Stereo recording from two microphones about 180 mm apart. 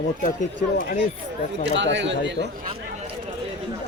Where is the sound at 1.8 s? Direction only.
85° right.